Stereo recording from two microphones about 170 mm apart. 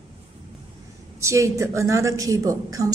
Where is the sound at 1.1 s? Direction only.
15° right (ahead or behind).